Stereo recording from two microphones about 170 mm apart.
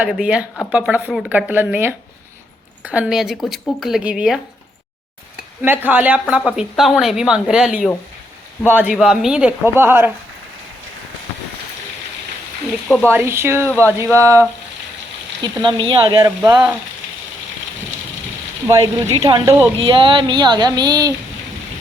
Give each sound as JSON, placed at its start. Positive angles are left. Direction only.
{"t": 0.0, "sound": "speech", "side_deg": -5}
{"t": 5.6, "sound": "speech", "side_deg": -10}
{"t": 13.1, "sound": "speech", "side_deg": -15}
{"t": 15.4, "sound": "speech", "side_deg": -30}
{"t": 19.0, "sound": "speech", "side_deg": -25}